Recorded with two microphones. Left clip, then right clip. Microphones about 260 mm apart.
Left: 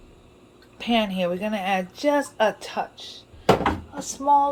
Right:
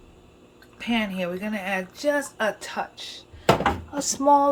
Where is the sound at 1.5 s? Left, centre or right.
Centre.